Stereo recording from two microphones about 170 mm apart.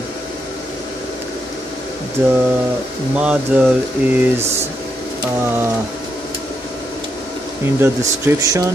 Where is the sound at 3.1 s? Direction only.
5° right (ahead or behind).